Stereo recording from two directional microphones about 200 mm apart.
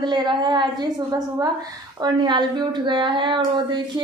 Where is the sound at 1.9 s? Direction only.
20° right (ahead or behind).